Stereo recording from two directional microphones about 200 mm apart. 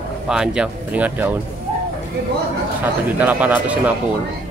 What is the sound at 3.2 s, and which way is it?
Speech, 10° right (ahead or behind).